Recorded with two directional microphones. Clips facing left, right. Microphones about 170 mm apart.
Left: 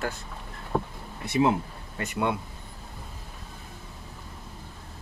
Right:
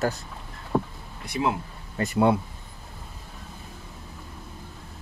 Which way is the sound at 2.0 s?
35° right (ahead or behind).